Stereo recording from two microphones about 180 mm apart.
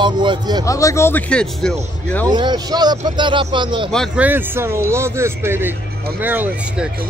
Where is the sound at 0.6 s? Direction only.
15° left (ahead or behind).